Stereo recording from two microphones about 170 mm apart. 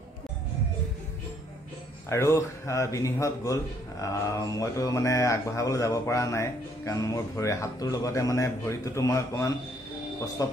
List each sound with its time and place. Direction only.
2.0 s speech: 15° left (ahead or behind)